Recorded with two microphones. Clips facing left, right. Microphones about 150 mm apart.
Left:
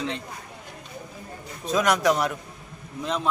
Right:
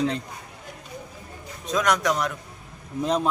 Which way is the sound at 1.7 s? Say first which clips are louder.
Left 2 dB; 5° left (ahead or behind).